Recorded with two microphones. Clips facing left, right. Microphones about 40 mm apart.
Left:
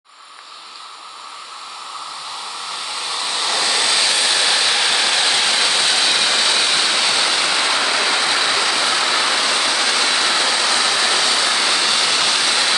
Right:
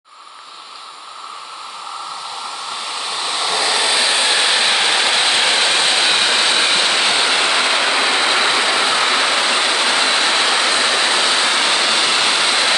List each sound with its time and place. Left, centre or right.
3.1 s vehicle: centre; by 12.7 s right